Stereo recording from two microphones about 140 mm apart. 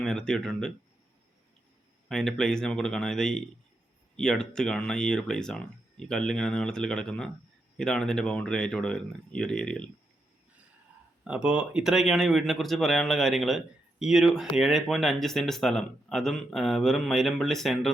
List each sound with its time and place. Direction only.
0.0 s speech: 5° left (ahead or behind)
2.0 s speech: 5° left (ahead or behind)
11.2 s speech: 10° right (ahead or behind)